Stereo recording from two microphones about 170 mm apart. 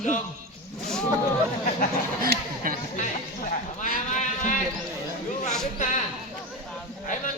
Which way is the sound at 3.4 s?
50° left (ahead or behind).